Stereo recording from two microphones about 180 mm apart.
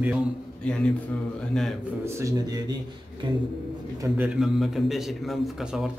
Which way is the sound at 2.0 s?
15° right (ahead or behind).